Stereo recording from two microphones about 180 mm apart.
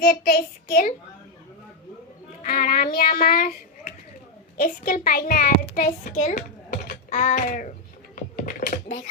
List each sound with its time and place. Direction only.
0.0 s a child's voice: 55° left (ahead or behind)
2.4 s a child's voice: 55° left (ahead or behind)
8.1 s a sound: 50° left (ahead or behind)